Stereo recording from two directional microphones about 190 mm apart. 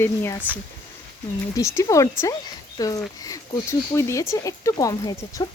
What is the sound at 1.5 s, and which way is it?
Speech, 15° left (ahead or behind).